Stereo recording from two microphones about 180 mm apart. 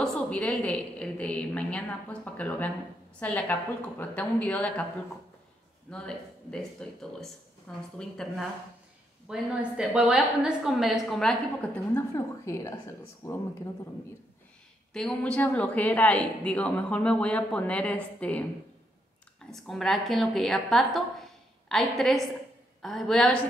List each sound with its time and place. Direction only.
0.0 s a woman's voice: 5° left (ahead or behind)
5.9 s speech: 5° left (ahead or behind)
11.9 s a woman's voice: 15° left (ahead or behind)
14.9 s a woman's voice: centre (ahead or behind)
19.5 s a woman's voice: centre (ahead or behind)